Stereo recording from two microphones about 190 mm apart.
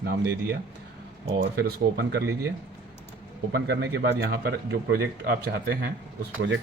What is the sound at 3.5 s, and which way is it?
Speech, 65° right (ahead or behind).